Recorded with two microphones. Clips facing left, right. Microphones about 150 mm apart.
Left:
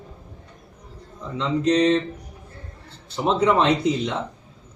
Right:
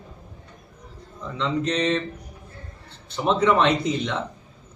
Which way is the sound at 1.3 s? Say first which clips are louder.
Left 5 dB; 35° left (ahead or behind).